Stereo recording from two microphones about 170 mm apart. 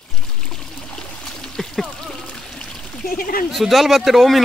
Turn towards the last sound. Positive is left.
turn(degrees=0)  # may be behind; listen again after turning